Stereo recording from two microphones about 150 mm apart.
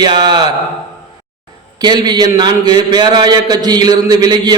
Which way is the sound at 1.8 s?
30° right (ahead or behind).